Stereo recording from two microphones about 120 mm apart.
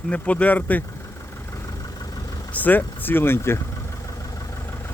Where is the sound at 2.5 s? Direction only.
15° left (ahead or behind).